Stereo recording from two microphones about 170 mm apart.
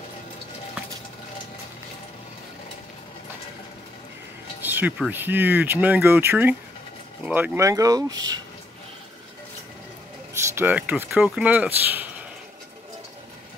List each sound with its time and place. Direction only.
4.6 s speech: 10° right (ahead or behind)
10.5 s speech: 10° right (ahead or behind)